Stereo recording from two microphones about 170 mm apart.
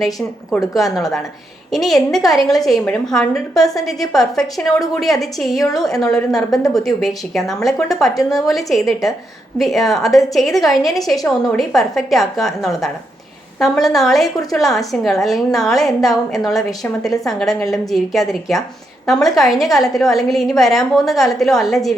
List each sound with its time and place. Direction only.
0.0 s a woman's voice: centre (ahead or behind)
6.3 s a woman's voice: 20° left (ahead or behind)
6.8 s a woman's voice: centre (ahead or behind)